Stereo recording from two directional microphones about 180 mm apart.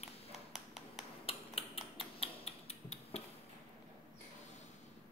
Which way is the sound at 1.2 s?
30° left (ahead or behind).